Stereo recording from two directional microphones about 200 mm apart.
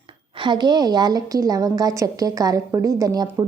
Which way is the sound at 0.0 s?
25° right (ahead or behind).